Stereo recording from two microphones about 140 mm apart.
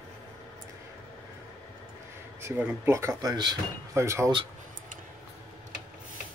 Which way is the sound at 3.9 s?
20° right (ahead or behind).